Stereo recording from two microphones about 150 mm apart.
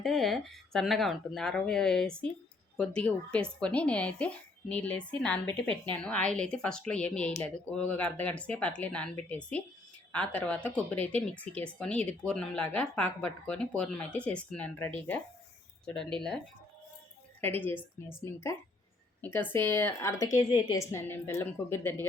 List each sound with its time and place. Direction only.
0.0 s speech: centre (ahead or behind)
17.4 s a woman's voice: 15° left (ahead or behind)